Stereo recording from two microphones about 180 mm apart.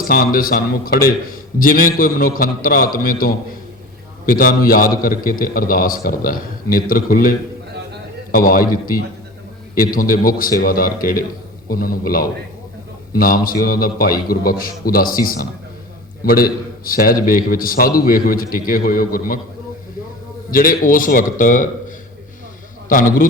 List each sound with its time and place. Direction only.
0.1 s a man's voice: 55° left (ahead or behind)
20.5 s a man's voice: 50° left (ahead or behind)
22.9 s a man's voice: 50° left (ahead or behind)